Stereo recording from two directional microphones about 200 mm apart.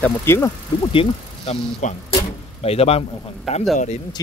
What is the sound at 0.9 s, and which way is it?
Speech, 30° left (ahead or behind).